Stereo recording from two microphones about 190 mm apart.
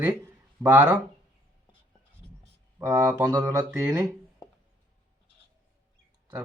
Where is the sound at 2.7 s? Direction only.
15° right (ahead or behind).